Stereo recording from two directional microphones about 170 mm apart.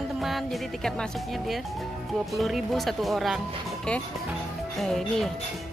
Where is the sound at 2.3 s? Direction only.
Centre (ahead or behind).